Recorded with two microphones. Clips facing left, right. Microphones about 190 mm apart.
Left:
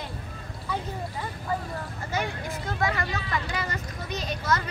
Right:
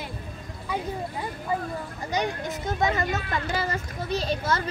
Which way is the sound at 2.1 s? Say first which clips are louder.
Right 3 dB; 20° right (ahead or behind).